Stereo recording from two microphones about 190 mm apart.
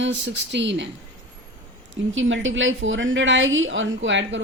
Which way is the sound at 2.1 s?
90° right.